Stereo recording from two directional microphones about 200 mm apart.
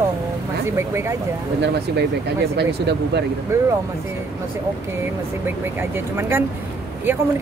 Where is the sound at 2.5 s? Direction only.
55° right (ahead or behind).